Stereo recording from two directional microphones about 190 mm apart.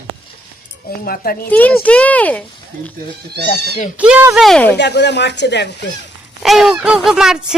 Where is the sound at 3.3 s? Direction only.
60° right (ahead or behind).